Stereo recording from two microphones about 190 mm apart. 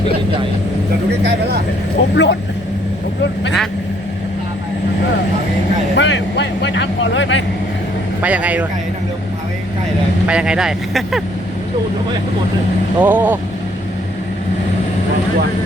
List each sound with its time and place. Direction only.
2.1 s speech: 65° left (ahead or behind)
6.0 s speech: 70° left (ahead or behind)
8.2 s a man's voice: 5° right (ahead or behind)
10.2 s speech: 5° right (ahead or behind)
13.0 s a man's voice: 10° right (ahead or behind)